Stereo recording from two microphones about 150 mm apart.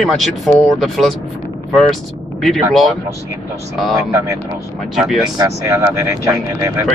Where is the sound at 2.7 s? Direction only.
Centre (ahead or behind).